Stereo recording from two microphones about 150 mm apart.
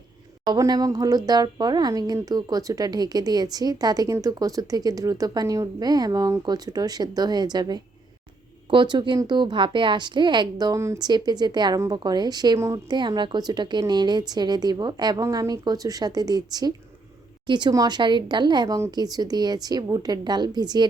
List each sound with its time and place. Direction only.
0.5 s a woman's voice: 25° right (ahead or behind)